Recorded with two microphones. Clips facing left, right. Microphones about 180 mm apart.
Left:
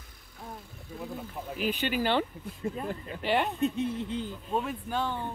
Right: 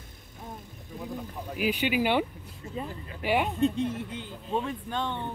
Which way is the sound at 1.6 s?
10° right (ahead or behind).